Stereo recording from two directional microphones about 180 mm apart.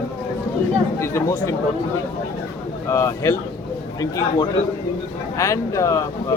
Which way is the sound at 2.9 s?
15° left (ahead or behind).